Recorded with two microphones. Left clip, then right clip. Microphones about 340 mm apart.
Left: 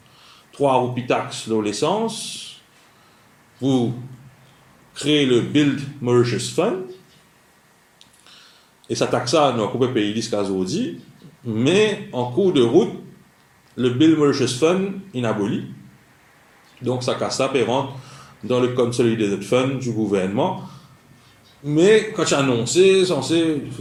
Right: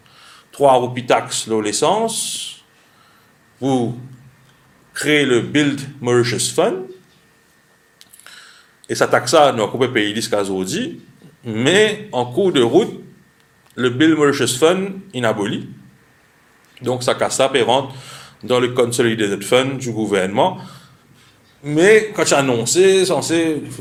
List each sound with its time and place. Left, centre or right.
0.2 s speech: right
4.9 s speech: right
8.2 s a sound: right
8.9 s speech: right
13.7 s speech: right
16.8 s speech: right
21.8 s speech: right